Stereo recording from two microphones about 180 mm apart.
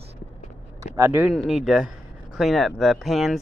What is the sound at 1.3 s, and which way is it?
Speech, centre (ahead or behind).